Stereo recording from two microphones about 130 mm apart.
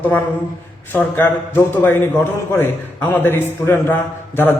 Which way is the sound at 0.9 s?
15° left (ahead or behind).